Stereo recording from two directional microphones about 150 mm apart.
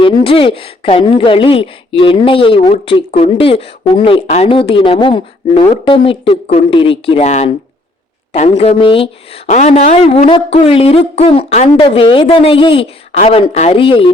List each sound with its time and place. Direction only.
0.0 s speech: 35° left (ahead or behind)
9.5 s speech: 45° left (ahead or behind)
11.8 s speech: 35° left (ahead or behind)